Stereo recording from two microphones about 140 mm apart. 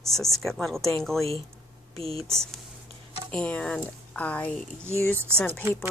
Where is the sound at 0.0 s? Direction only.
Centre (ahead or behind).